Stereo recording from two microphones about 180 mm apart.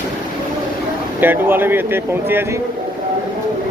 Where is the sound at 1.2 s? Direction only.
10° right (ahead or behind).